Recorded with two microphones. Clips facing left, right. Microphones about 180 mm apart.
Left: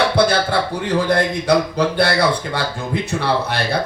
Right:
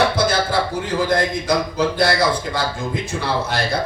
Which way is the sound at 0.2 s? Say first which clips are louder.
Left 4 dB; 65° left (ahead or behind).